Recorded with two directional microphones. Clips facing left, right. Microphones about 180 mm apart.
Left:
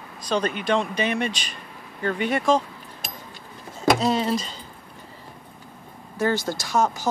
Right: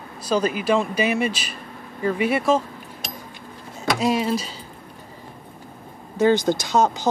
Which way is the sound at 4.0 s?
10° right (ahead or behind).